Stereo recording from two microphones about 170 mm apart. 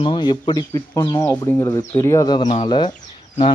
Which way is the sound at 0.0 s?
30° left (ahead or behind).